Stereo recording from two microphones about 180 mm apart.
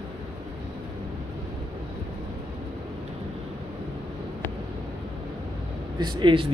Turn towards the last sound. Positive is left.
turn(degrees=-25)  # may be behind; listen again after turning